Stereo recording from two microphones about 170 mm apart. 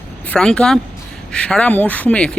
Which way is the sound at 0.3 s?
5° left (ahead or behind).